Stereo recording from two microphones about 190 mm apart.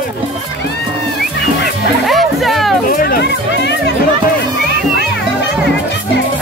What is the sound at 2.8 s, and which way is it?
Music, 50° left (ahead or behind).